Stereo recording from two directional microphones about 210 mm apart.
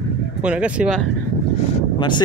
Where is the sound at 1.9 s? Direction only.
20° left (ahead or behind).